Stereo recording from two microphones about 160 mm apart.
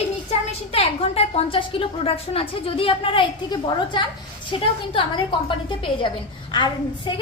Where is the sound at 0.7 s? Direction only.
40° left (ahead or behind).